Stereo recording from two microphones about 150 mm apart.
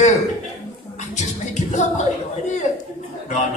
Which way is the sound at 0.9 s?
50° left (ahead or behind).